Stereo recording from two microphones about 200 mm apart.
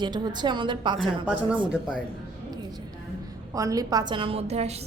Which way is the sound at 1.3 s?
5° right (ahead or behind).